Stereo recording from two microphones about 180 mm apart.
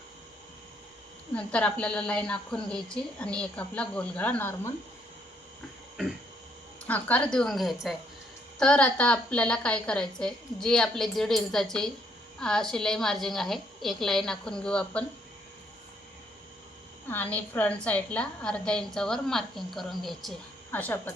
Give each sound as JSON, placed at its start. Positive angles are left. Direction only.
{"t": 1.3, "sound": "a woman's voice", "side_deg": 5}
{"t": 6.8, "sound": "a woman's voice", "side_deg": 10}
{"t": 17.1, "sound": "a woman's voice", "side_deg": 10}